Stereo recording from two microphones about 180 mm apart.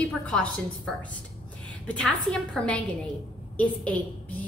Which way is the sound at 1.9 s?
5° left (ahead or behind).